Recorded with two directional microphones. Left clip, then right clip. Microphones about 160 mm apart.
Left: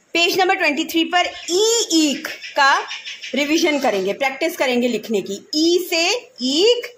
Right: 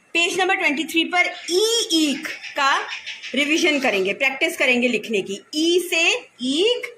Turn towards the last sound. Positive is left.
turn(degrees=50)  # may be behind; listen again after turning